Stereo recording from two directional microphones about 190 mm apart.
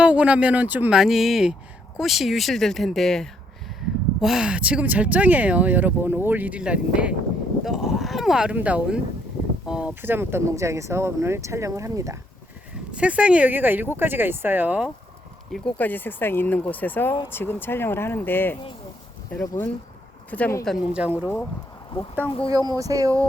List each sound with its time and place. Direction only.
0.0 s speech: 5° right (ahead or behind)
7.6 s a sound: centre (ahead or behind)
9.6 s speech: 5° right (ahead or behind)
15.5 s speech: 5° left (ahead or behind)
20.7 s speech: 5° right (ahead or behind)
22.3 s speech: 30° left (ahead or behind)
22.5 s speech: 20° right (ahead or behind)